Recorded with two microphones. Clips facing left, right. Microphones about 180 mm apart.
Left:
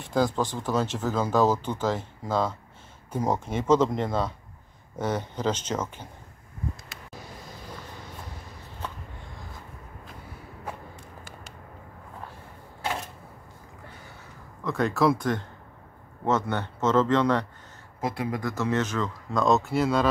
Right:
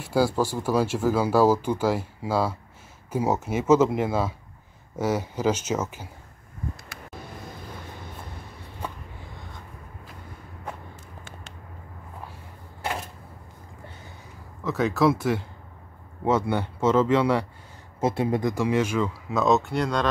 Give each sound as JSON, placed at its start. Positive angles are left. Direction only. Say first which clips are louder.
{"t": 0.0, "sound": "speech", "louder": "right 2 dB", "side_deg": -10}
{"t": 8.8, "sound": "a sound", "louder": "right 2 dB", "side_deg": 0}
{"t": 14.6, "sound": "speech", "louder": "right 2 dB", "side_deg": 0}
{"t": 18.0, "sound": "speech", "louder": "right 6 dB", "side_deg": -25}
{"t": 18.5, "sound": "speech", "louder": "right 3 dB", "side_deg": -10}